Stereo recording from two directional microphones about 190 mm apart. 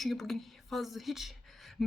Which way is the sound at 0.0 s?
Centre (ahead or behind).